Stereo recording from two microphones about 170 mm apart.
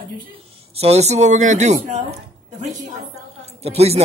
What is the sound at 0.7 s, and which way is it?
Speech, 40° right (ahead or behind).